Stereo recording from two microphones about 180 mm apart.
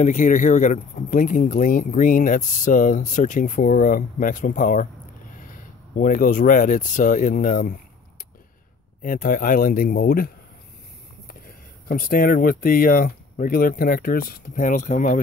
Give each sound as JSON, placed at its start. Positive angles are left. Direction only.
{"t": 0.0, "sound": "speech", "side_deg": 45}
{"t": 9.0, "sound": "speech", "side_deg": 50}
{"t": 11.4, "sound": "speech", "side_deg": 55}